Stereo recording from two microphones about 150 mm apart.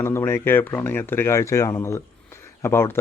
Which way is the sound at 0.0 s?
15° left (ahead or behind).